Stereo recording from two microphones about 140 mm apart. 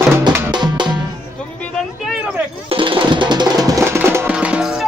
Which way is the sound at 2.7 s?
40° right (ahead or behind).